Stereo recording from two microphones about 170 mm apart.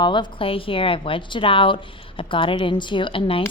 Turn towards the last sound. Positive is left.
turn(degrees=30)  # may be behind; listen again after turning